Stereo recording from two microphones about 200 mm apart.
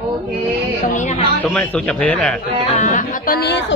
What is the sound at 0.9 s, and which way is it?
Speech, 35° left (ahead or behind).